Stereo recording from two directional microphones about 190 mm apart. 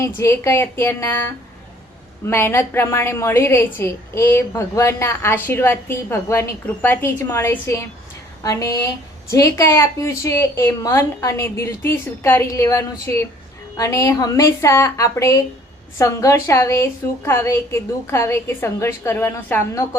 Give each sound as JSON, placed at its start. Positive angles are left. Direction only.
{"t": 0.0, "sound": "a woman's voice", "side_deg": 15}